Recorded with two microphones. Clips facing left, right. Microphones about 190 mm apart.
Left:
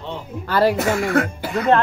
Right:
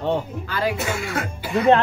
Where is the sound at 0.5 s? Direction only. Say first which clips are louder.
Left 7 dB; 55° left (ahead or behind).